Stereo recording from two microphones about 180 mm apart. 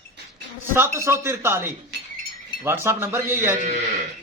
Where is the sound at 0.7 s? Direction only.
15° right (ahead or behind).